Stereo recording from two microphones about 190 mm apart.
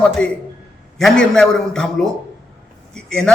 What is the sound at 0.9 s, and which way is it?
A man's voice, 5° left (ahead or behind).